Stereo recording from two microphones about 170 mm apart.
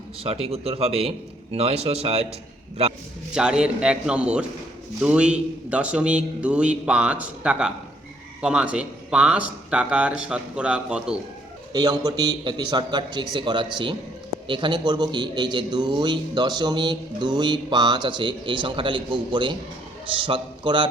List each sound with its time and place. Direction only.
0.2 s a man's voice: 35° right (ahead or behind)
3.3 s a man's voice: 5° right (ahead or behind)
11.7 s a man's voice: 25° right (ahead or behind)